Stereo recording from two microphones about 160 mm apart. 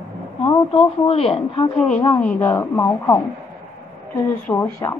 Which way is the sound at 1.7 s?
5° left (ahead or behind).